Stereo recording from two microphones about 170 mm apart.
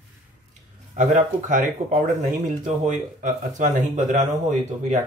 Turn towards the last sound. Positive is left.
turn(degrees=-45)  # may be behind; listen again after turning